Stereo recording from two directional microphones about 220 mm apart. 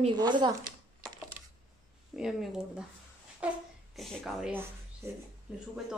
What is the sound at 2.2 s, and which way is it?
Speech, centre (ahead or behind).